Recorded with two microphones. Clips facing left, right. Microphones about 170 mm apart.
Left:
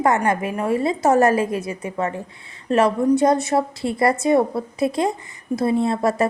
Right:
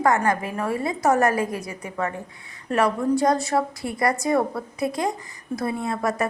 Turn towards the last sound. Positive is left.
turn(degrees=30)  # may be behind; listen again after turning